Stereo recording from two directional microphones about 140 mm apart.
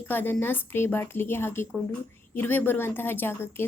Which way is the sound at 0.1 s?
15° left (ahead or behind).